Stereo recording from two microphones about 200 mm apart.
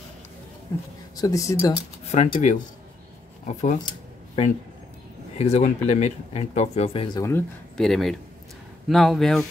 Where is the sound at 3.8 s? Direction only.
30° left (ahead or behind).